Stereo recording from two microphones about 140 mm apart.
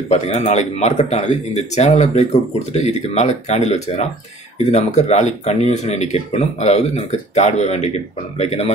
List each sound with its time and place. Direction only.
0.1 s speech: 50° left (ahead or behind)